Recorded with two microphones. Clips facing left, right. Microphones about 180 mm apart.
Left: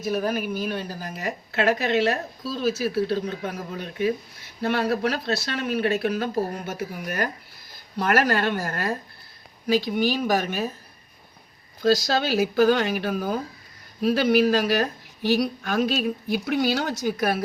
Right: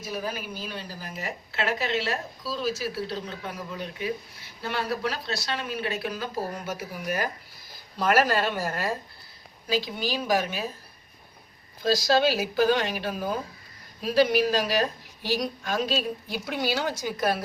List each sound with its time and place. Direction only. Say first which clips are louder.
0.1 s a woman's voice: left 8 dB; 55° left (ahead or behind)
12.3 s a woman's voice: left 4 dB; 50° left (ahead or behind)